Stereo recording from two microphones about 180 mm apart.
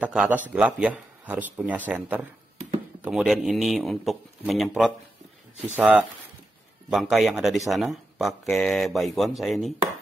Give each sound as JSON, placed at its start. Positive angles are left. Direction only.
{"t": 0.0, "sound": "a man's voice", "side_deg": -5}